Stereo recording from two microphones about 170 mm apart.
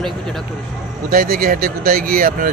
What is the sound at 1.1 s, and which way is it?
Speech, 60° right (ahead or behind).